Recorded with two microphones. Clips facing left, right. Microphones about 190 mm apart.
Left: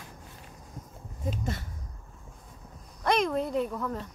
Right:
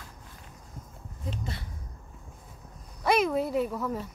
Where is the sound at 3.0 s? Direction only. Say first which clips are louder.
Right 1 dB; 5° right (ahead or behind).